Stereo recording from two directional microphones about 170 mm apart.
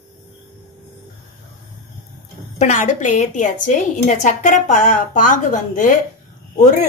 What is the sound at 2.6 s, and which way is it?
A woman's voice, 45° left (ahead or behind).